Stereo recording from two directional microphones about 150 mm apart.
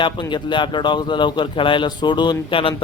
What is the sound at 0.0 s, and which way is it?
A man's voice, 30° left (ahead or behind).